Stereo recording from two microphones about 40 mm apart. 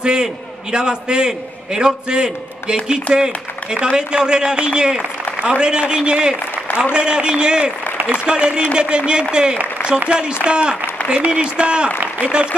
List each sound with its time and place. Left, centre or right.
0.0 s a man's voice: centre